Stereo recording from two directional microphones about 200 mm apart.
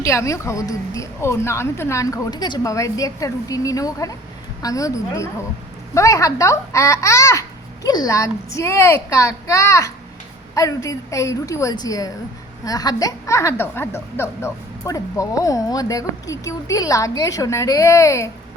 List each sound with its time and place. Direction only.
0.0 s a woman's voice: 15° left (ahead or behind)